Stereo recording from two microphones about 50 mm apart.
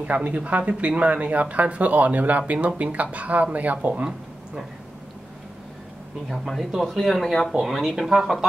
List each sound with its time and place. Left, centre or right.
0.0 s speech: right
6.2 s speech: centre